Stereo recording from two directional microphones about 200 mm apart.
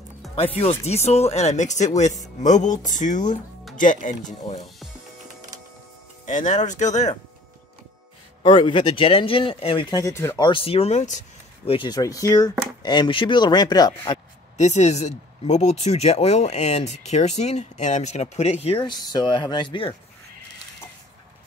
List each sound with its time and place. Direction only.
0.4 s speech: 30° left (ahead or behind)
6.2 s speech: 40° left (ahead or behind)
8.4 s speech: 25° left (ahead or behind)
14.6 s speech: 35° left (ahead or behind)